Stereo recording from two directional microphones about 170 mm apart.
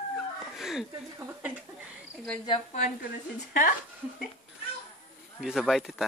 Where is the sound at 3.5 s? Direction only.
55° left (ahead or behind).